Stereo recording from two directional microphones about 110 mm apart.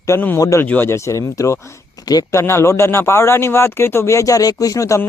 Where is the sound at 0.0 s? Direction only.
20° left (ahead or behind).